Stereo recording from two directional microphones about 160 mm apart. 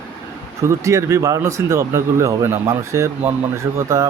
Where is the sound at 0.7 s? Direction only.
20° right (ahead or behind).